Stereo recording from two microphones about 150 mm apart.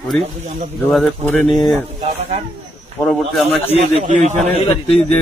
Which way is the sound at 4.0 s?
55° right (ahead or behind).